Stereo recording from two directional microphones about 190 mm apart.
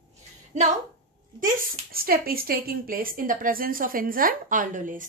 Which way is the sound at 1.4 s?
50° right (ahead or behind).